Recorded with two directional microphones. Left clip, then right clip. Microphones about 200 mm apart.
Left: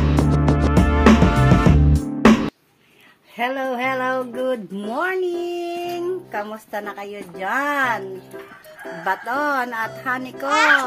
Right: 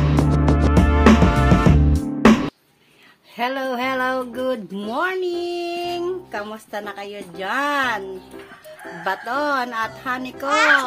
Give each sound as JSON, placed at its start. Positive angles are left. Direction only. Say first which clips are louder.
{"t": 0.0, "sound": "music", "louder": "even", "side_deg": 0}
{"t": 3.3, "sound": "speech", "louder": "even", "side_deg": 0}
{"t": 5.6, "sound": "a sound", "louder": "right 1 dB", "side_deg": -15}
{"t": 6.5, "sound": "speech", "louder": "left 1 dB", "side_deg": 0}
{"t": 9.1, "sound": "speech", "louder": "left 1 dB", "side_deg": 0}